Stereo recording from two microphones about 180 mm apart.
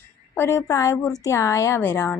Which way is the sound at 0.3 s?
15° left (ahead or behind).